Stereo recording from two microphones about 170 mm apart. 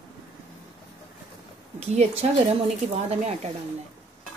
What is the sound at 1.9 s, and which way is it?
A woman's voice, 35° right (ahead or behind).